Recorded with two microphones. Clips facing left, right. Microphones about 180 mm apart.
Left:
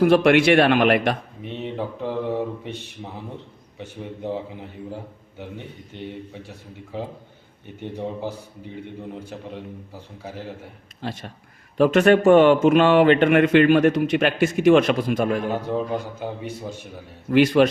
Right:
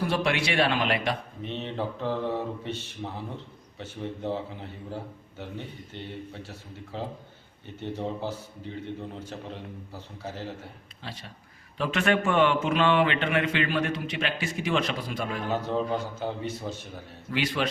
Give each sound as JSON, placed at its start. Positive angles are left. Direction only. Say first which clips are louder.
{"t": 0.0, "sound": "speech", "louder": "left 12 dB", "side_deg": 60}
{"t": 1.4, "sound": "a man's voice", "louder": "left 3 dB", "side_deg": 10}
{"t": 5.4, "sound": "a man's voice", "louder": "left 2 dB", "side_deg": 15}
{"t": 11.0, "sound": "a man's voice", "louder": "left 10 dB", "side_deg": 50}
{"t": 14.6, "sound": "a man's voice", "louder": "left 12 dB", "side_deg": 50}
{"t": 15.5, "sound": "a man's voice", "louder": "left 3 dB", "side_deg": 10}
{"t": 17.2, "sound": "a man's voice", "louder": "left 13 dB", "side_deg": 50}